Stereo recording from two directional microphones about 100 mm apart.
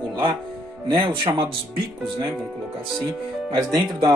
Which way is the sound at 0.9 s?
60° right (ahead or behind).